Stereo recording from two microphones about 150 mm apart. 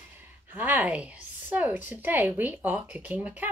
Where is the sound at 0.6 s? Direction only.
10° right (ahead or behind).